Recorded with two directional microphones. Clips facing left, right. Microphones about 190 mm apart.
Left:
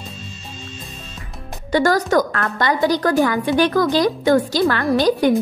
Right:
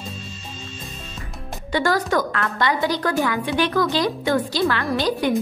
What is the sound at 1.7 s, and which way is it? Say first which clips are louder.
A woman's voice: left 4 dB; 40° left (ahead or behind).